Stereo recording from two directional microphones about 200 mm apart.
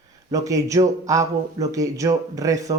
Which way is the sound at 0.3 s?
15° right (ahead or behind).